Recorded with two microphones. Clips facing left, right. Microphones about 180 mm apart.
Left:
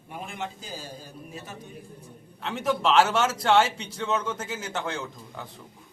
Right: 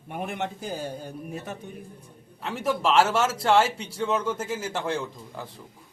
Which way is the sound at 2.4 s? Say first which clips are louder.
Even; 5° right (ahead or behind).